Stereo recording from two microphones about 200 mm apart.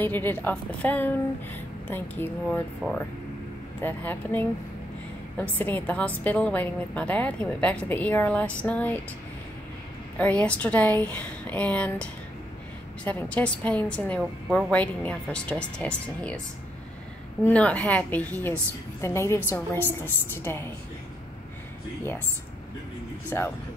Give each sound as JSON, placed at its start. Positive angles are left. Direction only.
{"t": 0.0, "sound": "a woman's voice", "side_deg": 10}
{"t": 10.1, "sound": "a woman's voice", "side_deg": 5}
{"t": 17.5, "sound": "a woman's voice", "side_deg": 5}
{"t": 23.3, "sound": "a woman's voice", "side_deg": 15}